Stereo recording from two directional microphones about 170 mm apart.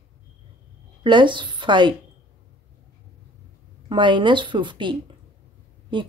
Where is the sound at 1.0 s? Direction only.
30° right (ahead or behind).